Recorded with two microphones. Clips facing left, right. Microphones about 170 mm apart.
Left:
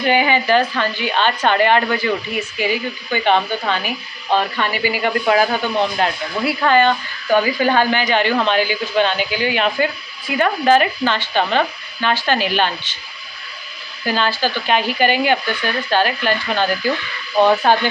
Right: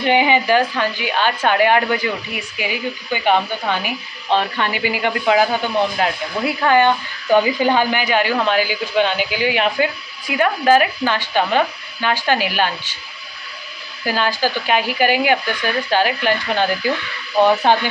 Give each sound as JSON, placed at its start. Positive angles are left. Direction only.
{"t": 0.0, "sound": "speech", "side_deg": -20}
{"t": 5.0, "sound": "speech", "side_deg": -15}
{"t": 14.0, "sound": "speech", "side_deg": -10}